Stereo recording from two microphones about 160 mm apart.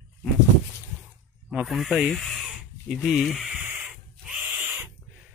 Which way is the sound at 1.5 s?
5° right (ahead or behind).